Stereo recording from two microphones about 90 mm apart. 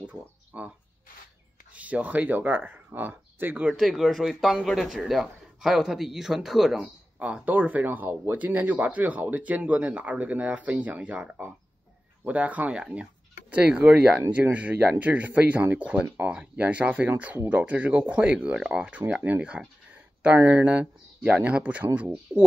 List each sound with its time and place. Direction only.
0.5 s a sound: 15° right (ahead or behind)
1.7 s speech: 15° right (ahead or behind)
3.7 s speech: centre (ahead or behind)
6.8 s speech: 15° right (ahead or behind)